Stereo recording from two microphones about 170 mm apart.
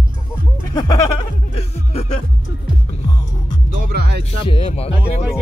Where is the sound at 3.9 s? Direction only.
70° right (ahead or behind).